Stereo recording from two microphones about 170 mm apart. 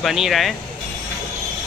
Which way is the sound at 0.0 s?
Centre (ahead or behind).